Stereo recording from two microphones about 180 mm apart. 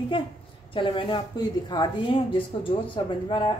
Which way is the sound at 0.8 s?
30° left (ahead or behind).